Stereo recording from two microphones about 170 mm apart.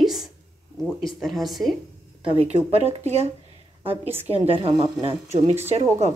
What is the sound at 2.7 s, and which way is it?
Speech, 35° right (ahead or behind).